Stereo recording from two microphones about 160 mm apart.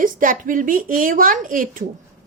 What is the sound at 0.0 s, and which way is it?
A woman's voice, 55° right (ahead or behind).